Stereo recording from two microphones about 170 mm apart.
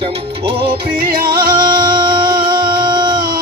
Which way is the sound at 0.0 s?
30° right (ahead or behind).